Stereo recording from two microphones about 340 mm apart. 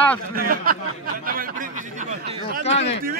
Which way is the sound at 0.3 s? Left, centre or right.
Right.